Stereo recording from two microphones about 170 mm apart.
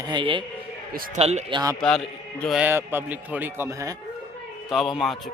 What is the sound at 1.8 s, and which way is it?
Speech, 5° left (ahead or behind).